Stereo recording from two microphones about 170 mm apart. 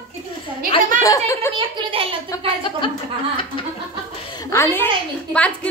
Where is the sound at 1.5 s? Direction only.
30° right (ahead or behind).